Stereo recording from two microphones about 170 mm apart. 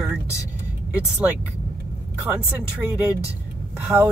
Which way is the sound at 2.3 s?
10° right (ahead or behind).